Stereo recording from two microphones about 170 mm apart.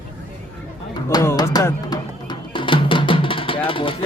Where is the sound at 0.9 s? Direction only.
20° left (ahead or behind).